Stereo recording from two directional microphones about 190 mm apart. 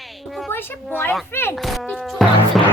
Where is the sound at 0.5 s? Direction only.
10° left (ahead or behind).